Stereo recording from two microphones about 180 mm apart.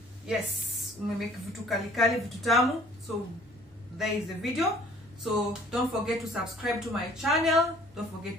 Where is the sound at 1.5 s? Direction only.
Centre (ahead or behind).